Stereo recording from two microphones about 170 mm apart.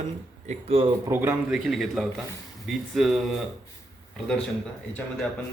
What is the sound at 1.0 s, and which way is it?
Speech, 15° right (ahead or behind).